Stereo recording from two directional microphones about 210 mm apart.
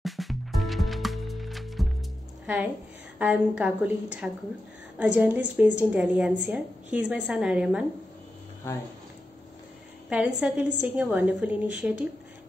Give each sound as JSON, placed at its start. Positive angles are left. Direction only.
{"t": 0.0, "sound": "music", "side_deg": 0}
{"t": 2.4, "sound": "a woman's voice", "side_deg": -5}
{"t": 10.0, "sound": "a woman's voice", "side_deg": -5}